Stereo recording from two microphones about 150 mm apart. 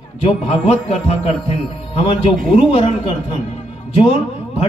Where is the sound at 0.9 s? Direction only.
40° left (ahead or behind).